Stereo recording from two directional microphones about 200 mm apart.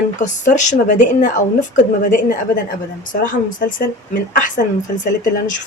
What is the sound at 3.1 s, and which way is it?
A woman's voice, 45° left (ahead or behind).